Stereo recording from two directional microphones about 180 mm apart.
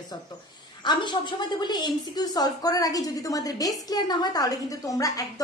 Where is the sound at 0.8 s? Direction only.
25° left (ahead or behind).